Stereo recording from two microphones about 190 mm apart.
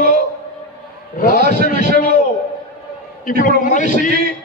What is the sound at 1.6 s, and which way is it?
Speech, 45° left (ahead or behind).